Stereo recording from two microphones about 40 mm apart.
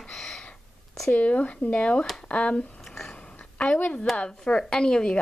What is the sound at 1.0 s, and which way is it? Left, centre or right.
Speech, left.